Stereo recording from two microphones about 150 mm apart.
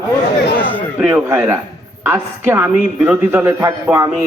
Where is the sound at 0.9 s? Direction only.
15° right (ahead or behind).